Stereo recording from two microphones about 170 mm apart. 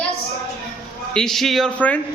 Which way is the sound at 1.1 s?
Centre (ahead or behind).